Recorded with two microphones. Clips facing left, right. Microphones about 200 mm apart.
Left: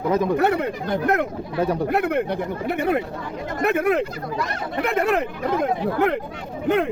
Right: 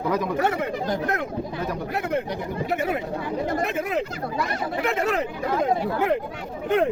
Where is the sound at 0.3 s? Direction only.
60° left (ahead or behind).